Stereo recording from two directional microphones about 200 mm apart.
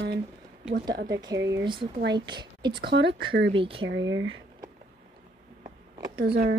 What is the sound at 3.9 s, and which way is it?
Speech, 70° right (ahead or behind).